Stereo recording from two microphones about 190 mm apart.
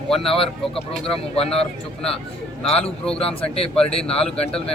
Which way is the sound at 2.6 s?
5° left (ahead or behind).